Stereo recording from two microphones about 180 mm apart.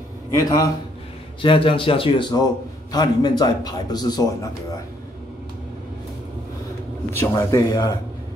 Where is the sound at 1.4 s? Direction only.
30° left (ahead or behind).